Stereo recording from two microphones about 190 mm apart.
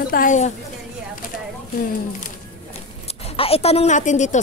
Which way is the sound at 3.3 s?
30° left (ahead or behind).